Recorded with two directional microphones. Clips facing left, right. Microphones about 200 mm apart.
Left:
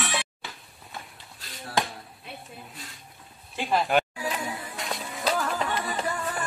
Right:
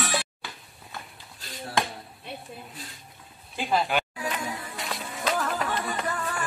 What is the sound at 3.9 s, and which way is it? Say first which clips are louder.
Music: left 3 dB; centre (ahead or behind).